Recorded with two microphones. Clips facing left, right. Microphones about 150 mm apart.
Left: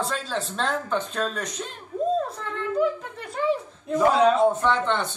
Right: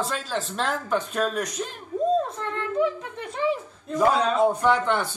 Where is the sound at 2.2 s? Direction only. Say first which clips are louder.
Even; centre (ahead or behind).